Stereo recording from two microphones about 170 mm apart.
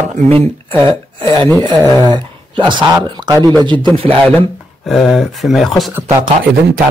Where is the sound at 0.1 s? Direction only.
35° right (ahead or behind).